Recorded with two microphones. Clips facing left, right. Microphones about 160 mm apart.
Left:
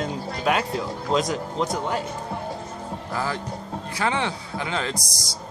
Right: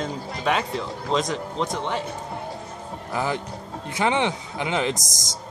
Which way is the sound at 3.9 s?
20° right (ahead or behind).